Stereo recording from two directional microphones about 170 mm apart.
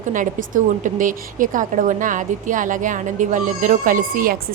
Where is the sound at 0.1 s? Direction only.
50° right (ahead or behind).